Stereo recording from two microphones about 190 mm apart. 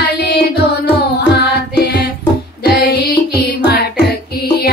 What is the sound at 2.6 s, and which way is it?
Music, 50° left (ahead or behind).